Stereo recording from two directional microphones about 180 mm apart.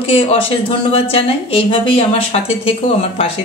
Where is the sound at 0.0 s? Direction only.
30° left (ahead or behind).